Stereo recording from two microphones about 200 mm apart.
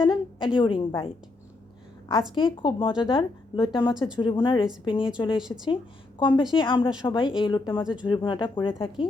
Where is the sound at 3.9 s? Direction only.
5° right (ahead or behind).